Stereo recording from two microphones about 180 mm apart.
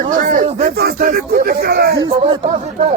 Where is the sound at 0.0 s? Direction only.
45° right (ahead or behind).